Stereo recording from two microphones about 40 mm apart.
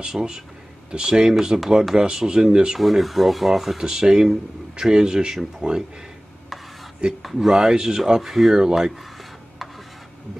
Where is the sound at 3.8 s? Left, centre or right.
Centre.